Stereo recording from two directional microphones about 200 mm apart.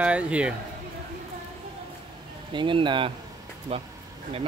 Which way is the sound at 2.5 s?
25° right (ahead or behind).